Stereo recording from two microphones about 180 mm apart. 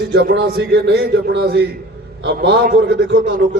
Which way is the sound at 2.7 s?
80° right.